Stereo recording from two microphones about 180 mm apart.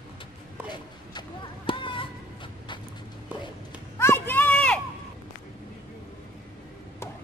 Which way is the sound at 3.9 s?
15° left (ahead or behind).